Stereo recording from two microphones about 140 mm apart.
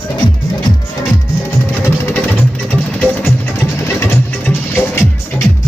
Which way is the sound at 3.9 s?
15° left (ahead or behind).